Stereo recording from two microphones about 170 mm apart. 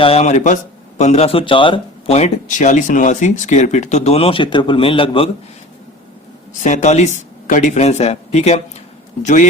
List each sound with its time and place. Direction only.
0.0 s speech: 35° left (ahead or behind)
6.6 s speech: 45° left (ahead or behind)